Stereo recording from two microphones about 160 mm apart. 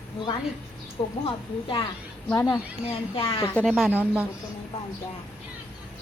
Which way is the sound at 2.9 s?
35° left (ahead or behind).